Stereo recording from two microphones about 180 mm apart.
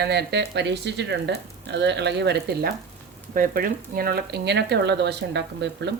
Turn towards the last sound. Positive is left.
turn(degrees=-70)  # may be behind; listen again after turning